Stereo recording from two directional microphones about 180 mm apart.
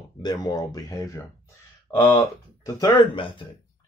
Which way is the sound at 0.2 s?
25° left (ahead or behind).